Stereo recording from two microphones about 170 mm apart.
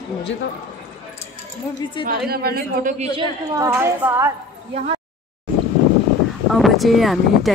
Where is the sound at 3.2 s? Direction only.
20° right (ahead or behind).